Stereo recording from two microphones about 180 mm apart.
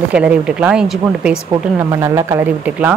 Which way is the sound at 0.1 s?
5° right (ahead or behind).